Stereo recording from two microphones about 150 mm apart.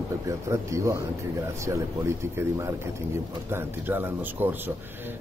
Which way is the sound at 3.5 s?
15° right (ahead or behind).